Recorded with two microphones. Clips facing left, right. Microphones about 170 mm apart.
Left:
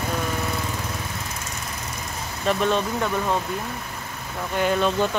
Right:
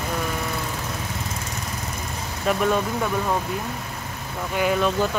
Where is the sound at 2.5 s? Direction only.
10° right (ahead or behind).